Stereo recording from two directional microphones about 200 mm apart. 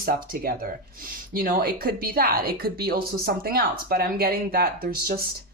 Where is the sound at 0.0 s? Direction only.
45° right (ahead or behind).